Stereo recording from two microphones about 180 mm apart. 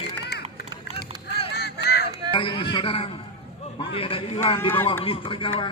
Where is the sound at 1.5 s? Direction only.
65° left (ahead or behind).